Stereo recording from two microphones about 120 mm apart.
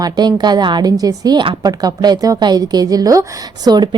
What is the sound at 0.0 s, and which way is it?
A woman's voice, 35° right (ahead or behind).